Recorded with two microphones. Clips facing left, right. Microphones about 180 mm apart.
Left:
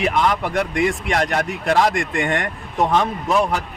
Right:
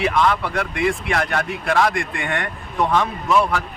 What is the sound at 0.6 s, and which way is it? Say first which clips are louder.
A man's voice: left 2 dB; 45° left (ahead or behind).